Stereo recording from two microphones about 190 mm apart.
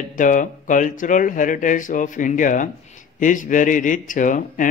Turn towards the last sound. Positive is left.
turn(degrees=45)  # may be behind; listen again after turning